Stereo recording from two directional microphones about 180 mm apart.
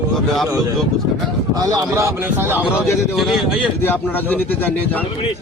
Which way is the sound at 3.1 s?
Centre (ahead or behind).